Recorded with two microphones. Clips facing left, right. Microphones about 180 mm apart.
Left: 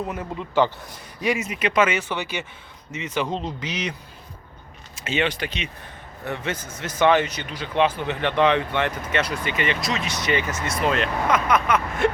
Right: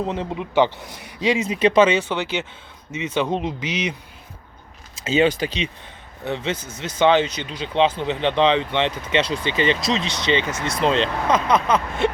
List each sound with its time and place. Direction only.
0.0 s speech: 25° right (ahead or behind)
0.8 s speech: 75° right (ahead or behind)
1.5 s speech: 30° right (ahead or behind)
5.2 s speech: 35° right (ahead or behind)
6.2 s speech: 25° right (ahead or behind)